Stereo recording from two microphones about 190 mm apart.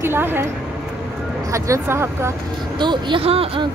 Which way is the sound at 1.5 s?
15° right (ahead or behind).